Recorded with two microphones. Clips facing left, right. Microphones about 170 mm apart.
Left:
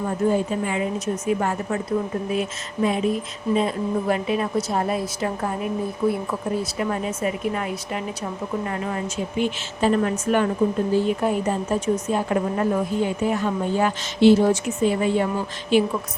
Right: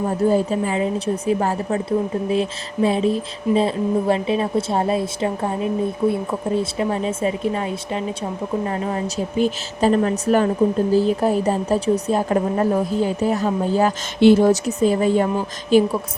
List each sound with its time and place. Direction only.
0.3 s a woman's voice: 35° right (ahead or behind)
14.2 s speech: 55° right (ahead or behind)
14.5 s a woman's voice: 40° right (ahead or behind)